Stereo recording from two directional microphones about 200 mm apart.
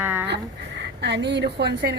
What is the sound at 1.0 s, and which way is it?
Speech, 60° right (ahead or behind).